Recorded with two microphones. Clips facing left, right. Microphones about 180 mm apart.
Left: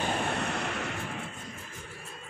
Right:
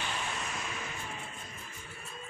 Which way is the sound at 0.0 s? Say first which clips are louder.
Left 8 dB; 55° left (ahead or behind).